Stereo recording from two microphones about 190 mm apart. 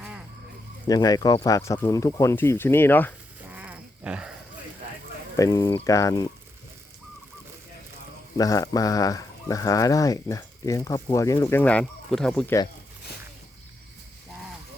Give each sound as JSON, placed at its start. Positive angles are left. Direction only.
{"t": 0.9, "sound": "speech", "side_deg": 20}
{"t": 3.5, "sound": "a sound", "side_deg": -10}
{"t": 5.4, "sound": "speech", "side_deg": 20}
{"t": 8.4, "sound": "speech", "side_deg": 20}